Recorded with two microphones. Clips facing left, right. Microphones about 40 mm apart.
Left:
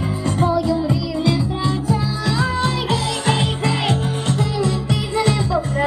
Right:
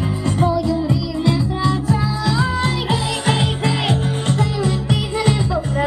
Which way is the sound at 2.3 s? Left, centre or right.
Centre.